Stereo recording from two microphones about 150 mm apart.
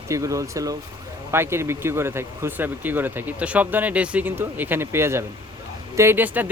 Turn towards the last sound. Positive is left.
turn(degrees=-15)  # may be behind; listen again after turning